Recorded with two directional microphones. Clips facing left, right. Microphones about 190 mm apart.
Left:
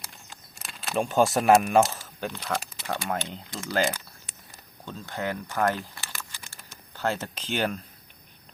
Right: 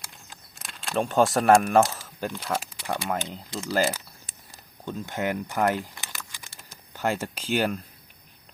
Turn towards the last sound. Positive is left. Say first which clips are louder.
# right 3 dB
turn(degrees=-5)  # may be behind; listen again after turning